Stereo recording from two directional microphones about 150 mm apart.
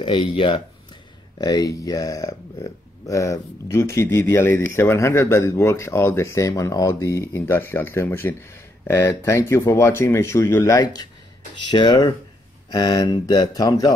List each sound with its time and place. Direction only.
0.0 s speech: 35° left (ahead or behind)